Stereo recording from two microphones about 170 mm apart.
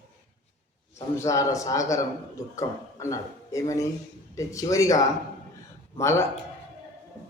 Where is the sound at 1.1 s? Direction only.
20° left (ahead or behind).